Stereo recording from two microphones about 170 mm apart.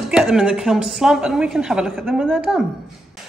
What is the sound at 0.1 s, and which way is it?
A woman's voice, 5° right (ahead or behind).